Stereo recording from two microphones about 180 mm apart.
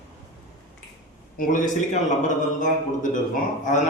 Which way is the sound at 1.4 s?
45° left (ahead or behind).